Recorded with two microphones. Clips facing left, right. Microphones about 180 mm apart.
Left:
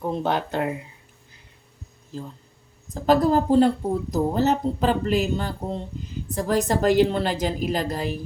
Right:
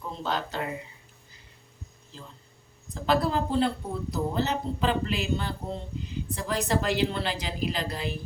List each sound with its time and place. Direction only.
0.0 s speech: 60° left (ahead or behind)
2.1 s a woman's voice: 45° left (ahead or behind)